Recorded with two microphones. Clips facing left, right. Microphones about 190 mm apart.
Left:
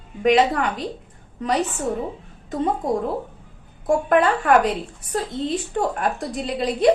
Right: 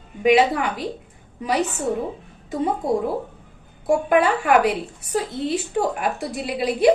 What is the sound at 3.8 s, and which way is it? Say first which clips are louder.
A woman's voice: even; 5° right (ahead or behind).